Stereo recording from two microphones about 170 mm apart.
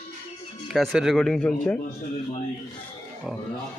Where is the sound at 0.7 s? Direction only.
Centre (ahead or behind).